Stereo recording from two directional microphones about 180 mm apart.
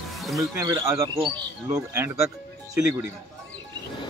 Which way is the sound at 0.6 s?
15° right (ahead or behind).